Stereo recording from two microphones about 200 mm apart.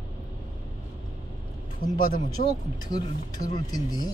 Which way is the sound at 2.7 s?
20° left (ahead or behind).